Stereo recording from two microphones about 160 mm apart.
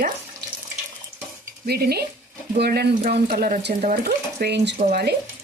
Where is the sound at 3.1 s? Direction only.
75° right (ahead or behind).